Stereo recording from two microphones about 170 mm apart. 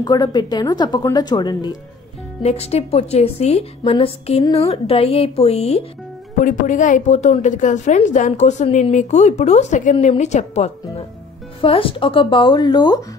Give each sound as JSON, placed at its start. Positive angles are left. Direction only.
{"t": 0.0, "sound": "speech", "side_deg": 25}
{"t": 2.4, "sound": "a woman's voice", "side_deg": 40}
{"t": 6.4, "sound": "a woman's voice", "side_deg": 50}